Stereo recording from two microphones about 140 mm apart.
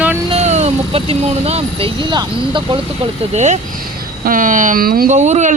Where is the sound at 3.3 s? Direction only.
55° right (ahead or behind).